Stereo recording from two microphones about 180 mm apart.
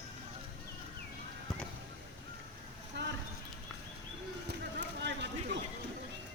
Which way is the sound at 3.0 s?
75° right (ahead or behind).